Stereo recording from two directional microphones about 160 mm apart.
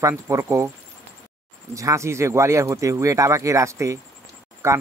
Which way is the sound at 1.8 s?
20° right (ahead or behind).